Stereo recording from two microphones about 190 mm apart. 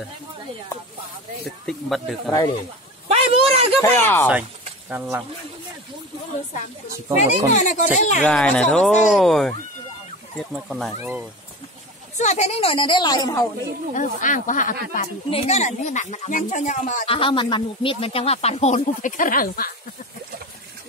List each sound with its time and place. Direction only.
1.4 s speech: centre (ahead or behind)
3.1 s a sound: 30° right (ahead or behind)
3.8 s speech: 10° left (ahead or behind)
4.3 s speech: 5° right (ahead or behind)
7.2 s speech: 40° left (ahead or behind)
8.2 s speech: 5° left (ahead or behind)
12.2 s a woman's voice: 35° left (ahead or behind); by 13.4 s 20° left (ahead or behind)
13.9 s speech: 45° left (ahead or behind)
15.2 s speech: 35° left (ahead or behind); by 19.7 s 50° left (ahead or behind)